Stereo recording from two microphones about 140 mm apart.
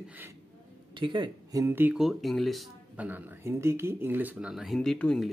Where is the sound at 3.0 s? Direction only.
10° right (ahead or behind).